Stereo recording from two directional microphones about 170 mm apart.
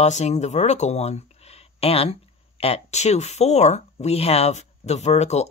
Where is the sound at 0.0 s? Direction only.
40° left (ahead or behind).